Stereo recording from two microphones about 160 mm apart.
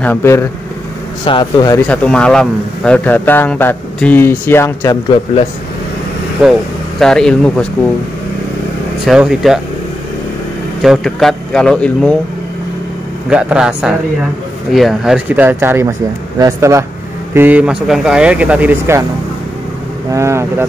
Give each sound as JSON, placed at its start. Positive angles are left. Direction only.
{"t": 0.0, "sound": "a man's voice", "side_deg": 15}
{"t": 1.2, "sound": "speech", "side_deg": 30}
{"t": 1.9, "sound": "a man's voice", "side_deg": 5}
{"t": 7.0, "sound": "a man's voice", "side_deg": 5}
{"t": 9.0, "sound": "a man's voice", "side_deg": -5}
{"t": 10.8, "sound": "a man's voice", "side_deg": 0}
{"t": 13.3, "sound": "a man's voice", "side_deg": -5}
{"t": 20.1, "sound": "speech", "side_deg": -20}